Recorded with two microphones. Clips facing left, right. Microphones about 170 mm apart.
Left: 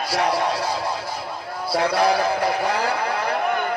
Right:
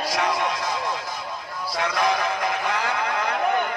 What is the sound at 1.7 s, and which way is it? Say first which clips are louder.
A man's voice: left 5 dB; 35° left (ahead or behind).